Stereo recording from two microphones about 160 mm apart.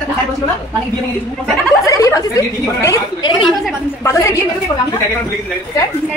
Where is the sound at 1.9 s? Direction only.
20° left (ahead or behind).